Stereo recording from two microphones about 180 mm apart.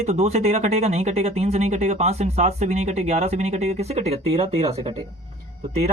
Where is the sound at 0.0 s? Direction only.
35° right (ahead or behind).